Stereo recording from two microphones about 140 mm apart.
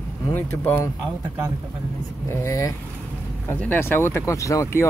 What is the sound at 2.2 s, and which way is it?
A man's voice, 20° left (ahead or behind).